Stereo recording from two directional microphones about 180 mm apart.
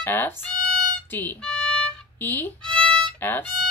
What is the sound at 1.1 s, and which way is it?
Violin, 10° left (ahead or behind).